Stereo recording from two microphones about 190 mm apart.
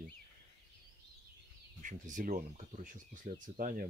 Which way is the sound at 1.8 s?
45° right (ahead or behind).